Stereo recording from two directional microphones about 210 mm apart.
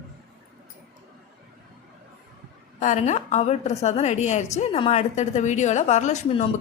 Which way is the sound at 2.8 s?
35° left (ahead or behind).